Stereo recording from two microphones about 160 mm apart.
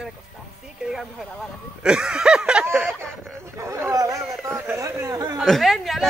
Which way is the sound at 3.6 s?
15° right (ahead or behind).